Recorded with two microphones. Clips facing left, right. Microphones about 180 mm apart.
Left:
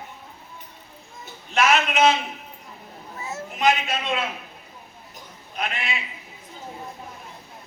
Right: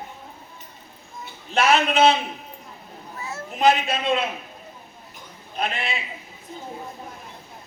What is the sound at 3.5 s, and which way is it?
Speech, 35° right (ahead or behind).